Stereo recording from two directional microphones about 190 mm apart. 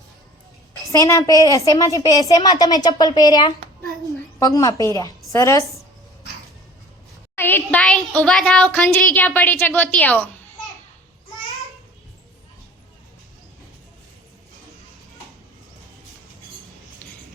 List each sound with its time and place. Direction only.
0.9 s a woman's voice: 15° left (ahead or behind)
7.3 s speech: 10° left (ahead or behind)